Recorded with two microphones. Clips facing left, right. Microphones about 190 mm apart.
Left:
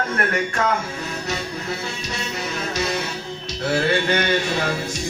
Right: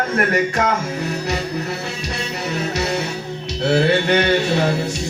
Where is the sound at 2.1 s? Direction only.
65° right (ahead or behind).